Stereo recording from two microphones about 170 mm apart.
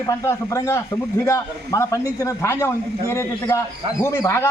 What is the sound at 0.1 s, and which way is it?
Speech, 20° left (ahead or behind).